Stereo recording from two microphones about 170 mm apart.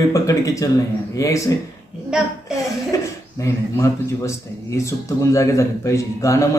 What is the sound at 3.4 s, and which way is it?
A man's voice, 20° left (ahead or behind).